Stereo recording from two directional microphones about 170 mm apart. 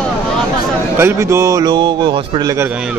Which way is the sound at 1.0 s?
15° right (ahead or behind).